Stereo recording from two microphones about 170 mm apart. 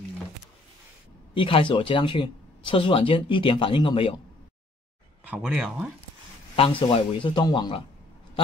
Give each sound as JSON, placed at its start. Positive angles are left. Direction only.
{"t": 1.3, "sound": "speech", "side_deg": 30}
{"t": 5.2, "sound": "speech", "side_deg": -5}
{"t": 6.5, "sound": "a man's voice", "side_deg": 35}